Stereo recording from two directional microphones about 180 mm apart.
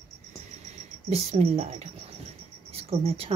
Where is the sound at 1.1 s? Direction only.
35° right (ahead or behind).